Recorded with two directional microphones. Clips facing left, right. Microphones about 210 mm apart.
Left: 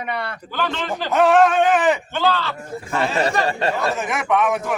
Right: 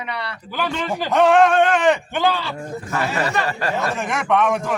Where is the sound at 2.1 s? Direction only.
15° right (ahead or behind).